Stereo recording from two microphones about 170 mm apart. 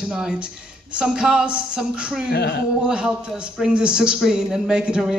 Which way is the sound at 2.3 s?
70° left (ahead or behind).